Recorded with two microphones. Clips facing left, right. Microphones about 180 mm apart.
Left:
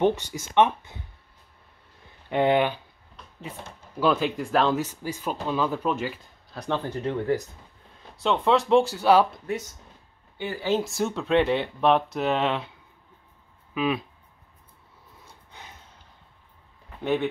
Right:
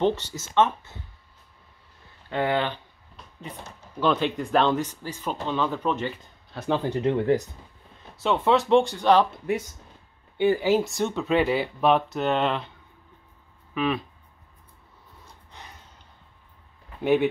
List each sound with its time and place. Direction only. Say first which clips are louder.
0.0 s speech: left 1 dB; 10° left (ahead or behind)
2.2 s speech: left 4 dB; 20° left (ahead or behind)
4.0 s speech: even; 5° left (ahead or behind); by 7.4 s 20° right (ahead or behind)
8.0 s speech: even; centre (ahead or behind)
10.3 s speech: right 10 dB; 20° right (ahead or behind)
10.7 s speech: right 2 dB; centre (ahead or behind)
13.7 s speech: even; 5° left (ahead or behind)
17.0 s speech: right 4 dB; 10° right (ahead or behind)